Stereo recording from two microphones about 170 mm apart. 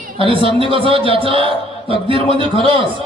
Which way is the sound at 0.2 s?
30° right (ahead or behind).